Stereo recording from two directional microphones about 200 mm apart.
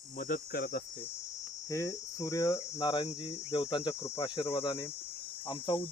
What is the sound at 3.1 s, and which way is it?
Speech, 30° left (ahead or behind).